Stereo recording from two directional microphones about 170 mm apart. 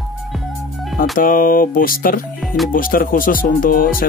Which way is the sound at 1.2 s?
55° left (ahead or behind).